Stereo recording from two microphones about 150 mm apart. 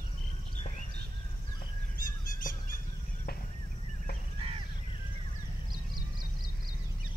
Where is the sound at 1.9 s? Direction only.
70° left (ahead or behind).